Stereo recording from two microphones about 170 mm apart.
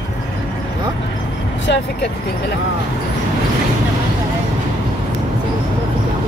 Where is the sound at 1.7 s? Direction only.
85° left.